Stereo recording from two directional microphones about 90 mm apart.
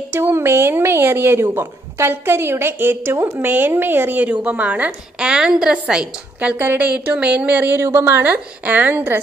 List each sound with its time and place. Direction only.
0.1 s speech: 25° right (ahead or behind); by 6.5 s 10° right (ahead or behind)
6.5 s speech: 20° right (ahead or behind)
7.8 s speech: 30° right (ahead or behind)